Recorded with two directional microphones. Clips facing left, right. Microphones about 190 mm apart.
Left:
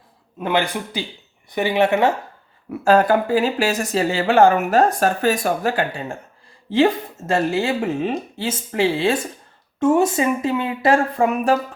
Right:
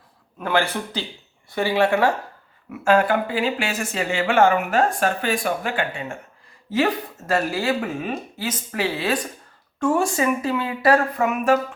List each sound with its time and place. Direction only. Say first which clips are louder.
0.3 s speech: left 1 dB; 20° left (ahead or behind)
2.6 s speech: left 3 dB; 35° left (ahead or behind)